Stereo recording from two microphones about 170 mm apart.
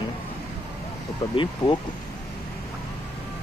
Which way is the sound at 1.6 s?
25° left (ahead or behind).